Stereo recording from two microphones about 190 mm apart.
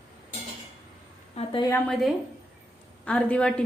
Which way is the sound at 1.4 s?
35° left (ahead or behind).